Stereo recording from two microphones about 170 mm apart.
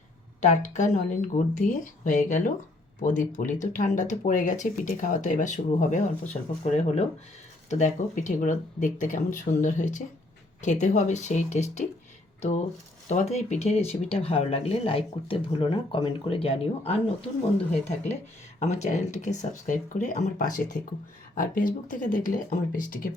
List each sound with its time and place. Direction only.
0.4 s speech: 45° left (ahead or behind)
13.1 s speech: 45° left (ahead or behind)
18.6 s speech: 45° left (ahead or behind)